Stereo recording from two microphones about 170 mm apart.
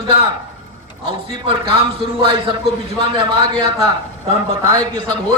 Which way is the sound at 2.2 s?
35° right (ahead or behind).